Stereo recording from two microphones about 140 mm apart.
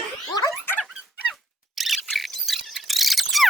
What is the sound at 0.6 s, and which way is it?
Dog, 15° left (ahead or behind).